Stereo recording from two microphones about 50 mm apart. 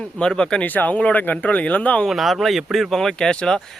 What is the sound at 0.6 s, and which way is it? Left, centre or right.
Speech, left.